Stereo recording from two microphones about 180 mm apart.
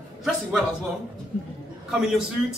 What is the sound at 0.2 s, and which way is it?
Speech, centre (ahead or behind).